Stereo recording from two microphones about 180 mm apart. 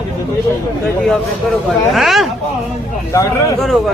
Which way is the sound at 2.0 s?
Centre (ahead or behind).